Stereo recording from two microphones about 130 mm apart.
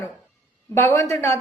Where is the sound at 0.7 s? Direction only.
20° left (ahead or behind).